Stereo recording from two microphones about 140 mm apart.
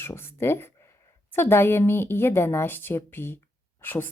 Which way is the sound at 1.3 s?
15° left (ahead or behind).